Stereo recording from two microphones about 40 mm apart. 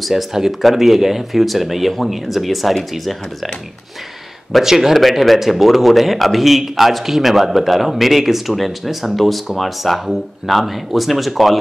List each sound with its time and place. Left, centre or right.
0.0 s speech: centre
4.5 s speech: centre